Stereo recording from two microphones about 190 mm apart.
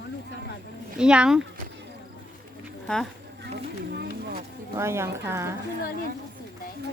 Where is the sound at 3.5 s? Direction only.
60° right (ahead or behind).